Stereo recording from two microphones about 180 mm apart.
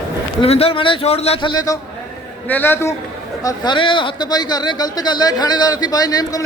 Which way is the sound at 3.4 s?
25° left (ahead or behind).